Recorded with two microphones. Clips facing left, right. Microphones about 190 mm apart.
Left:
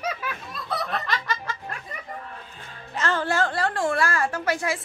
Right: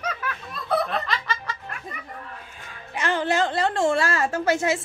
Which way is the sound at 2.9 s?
15° right (ahead or behind).